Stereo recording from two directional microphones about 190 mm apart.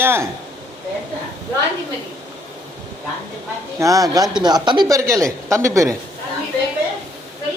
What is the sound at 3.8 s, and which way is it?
Speech, 15° right (ahead or behind).